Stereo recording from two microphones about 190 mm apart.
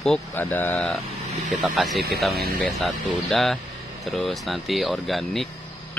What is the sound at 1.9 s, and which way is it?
Speech, 55° right (ahead or behind).